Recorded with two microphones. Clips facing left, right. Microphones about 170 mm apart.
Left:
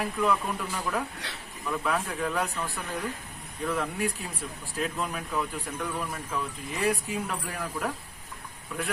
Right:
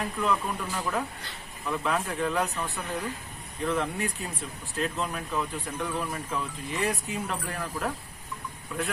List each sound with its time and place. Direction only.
0.0 s speech: 5° left (ahead or behind)
1.2 s speech: 80° left
1.6 s speech: centre (ahead or behind)
3.7 s speech: 5° left (ahead or behind)